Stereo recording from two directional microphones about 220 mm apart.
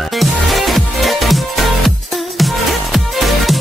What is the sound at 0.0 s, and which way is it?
Music, centre (ahead or behind).